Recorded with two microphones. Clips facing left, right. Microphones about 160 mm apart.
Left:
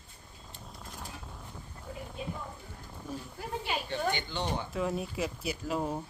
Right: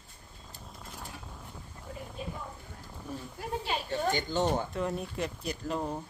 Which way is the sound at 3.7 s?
40° right (ahead or behind).